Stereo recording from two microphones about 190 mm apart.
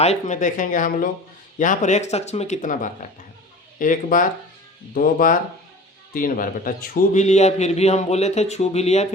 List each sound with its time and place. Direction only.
0.0 s a man's voice: 35° left (ahead or behind)